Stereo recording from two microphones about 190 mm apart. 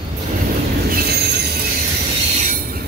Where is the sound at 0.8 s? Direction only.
55° right (ahead or behind).